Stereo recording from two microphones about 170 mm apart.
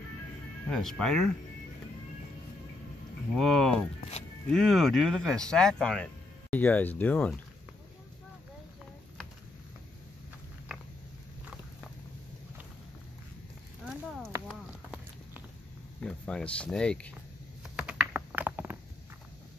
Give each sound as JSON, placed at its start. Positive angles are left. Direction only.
{"t": 0.7, "sound": "speech", "side_deg": 5}
{"t": 3.3, "sound": "speech", "side_deg": 5}
{"t": 13.8, "sound": "a sound", "side_deg": 0}
{"t": 14.5, "sound": "clip-clop", "side_deg": -5}
{"t": 16.0, "sound": "speech", "side_deg": 5}
{"t": 17.7, "sound": "computer keyboard", "side_deg": -5}